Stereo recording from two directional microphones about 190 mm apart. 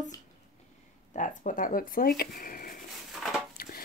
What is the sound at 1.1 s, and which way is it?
Speech, 40° left (ahead or behind).